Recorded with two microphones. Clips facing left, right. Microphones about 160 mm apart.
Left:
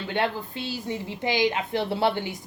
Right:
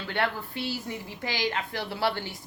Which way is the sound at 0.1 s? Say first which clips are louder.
Left 2 dB; 20° left (ahead or behind).